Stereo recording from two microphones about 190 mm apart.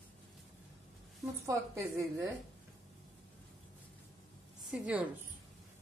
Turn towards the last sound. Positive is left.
turn(degrees=-5)  # may be behind; listen again after turning